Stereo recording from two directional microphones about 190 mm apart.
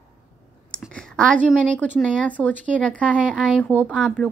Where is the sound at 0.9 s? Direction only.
5° left (ahead or behind).